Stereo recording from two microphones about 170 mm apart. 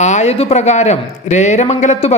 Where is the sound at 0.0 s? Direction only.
40° left (ahead or behind).